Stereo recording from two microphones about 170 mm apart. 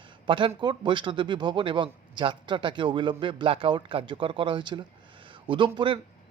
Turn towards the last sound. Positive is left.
turn(degrees=-30)  # may be behind; listen again after turning